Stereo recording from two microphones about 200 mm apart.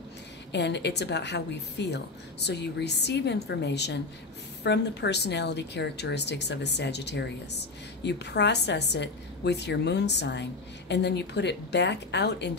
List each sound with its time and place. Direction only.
0.5 s a woman's voice: 60° left (ahead or behind)